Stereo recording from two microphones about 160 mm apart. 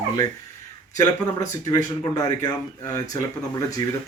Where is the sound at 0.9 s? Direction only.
20° left (ahead or behind).